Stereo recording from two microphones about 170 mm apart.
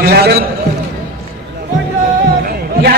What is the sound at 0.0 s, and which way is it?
Speech, 65° right (ahead or behind).